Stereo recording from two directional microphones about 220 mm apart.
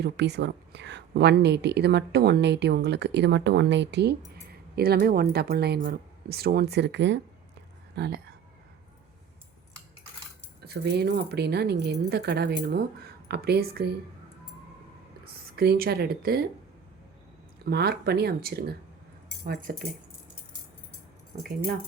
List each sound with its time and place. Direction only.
0.0 s speech: 50° right (ahead or behind)
10.6 s speech: 45° right (ahead or behind)
15.2 s speech: 45° right (ahead or behind)
17.7 s speech: 45° right (ahead or behind)
21.3 s speech: 40° right (ahead or behind)